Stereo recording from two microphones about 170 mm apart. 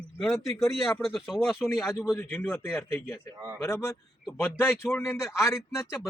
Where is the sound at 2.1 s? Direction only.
15° left (ahead or behind).